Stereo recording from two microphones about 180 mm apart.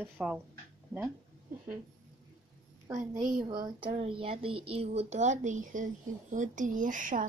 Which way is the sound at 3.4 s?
25° right (ahead or behind).